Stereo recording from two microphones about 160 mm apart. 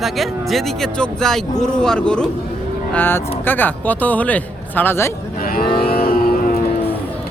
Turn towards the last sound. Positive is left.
turn(degrees=70)  # may be behind; listen again after turning